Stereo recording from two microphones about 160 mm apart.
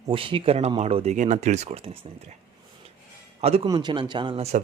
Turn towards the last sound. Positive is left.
turn(degrees=-40)  # may be behind; listen again after turning